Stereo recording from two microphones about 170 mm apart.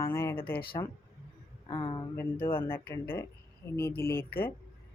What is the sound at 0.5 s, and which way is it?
Speech, 60° left (ahead or behind).